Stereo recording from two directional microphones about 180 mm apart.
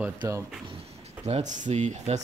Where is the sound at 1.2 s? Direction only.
40° right (ahead or behind).